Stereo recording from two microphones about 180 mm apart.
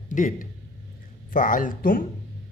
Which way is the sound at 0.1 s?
45° left (ahead or behind).